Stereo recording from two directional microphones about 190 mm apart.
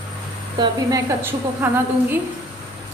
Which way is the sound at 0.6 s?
20° right (ahead or behind).